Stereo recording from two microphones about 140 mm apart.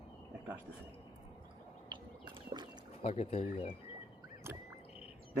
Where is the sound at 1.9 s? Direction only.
30° right (ahead or behind).